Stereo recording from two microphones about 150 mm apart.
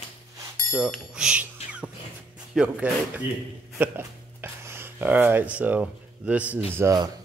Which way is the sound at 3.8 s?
15° right (ahead or behind).